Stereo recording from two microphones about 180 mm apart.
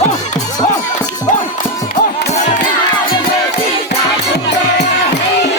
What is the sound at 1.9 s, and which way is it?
Music, 45° left (ahead or behind).